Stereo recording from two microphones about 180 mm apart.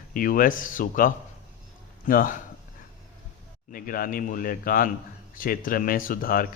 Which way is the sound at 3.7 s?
55° left (ahead or behind).